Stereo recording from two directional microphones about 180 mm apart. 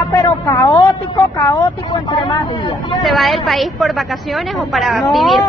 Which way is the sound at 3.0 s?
Centre (ahead or behind).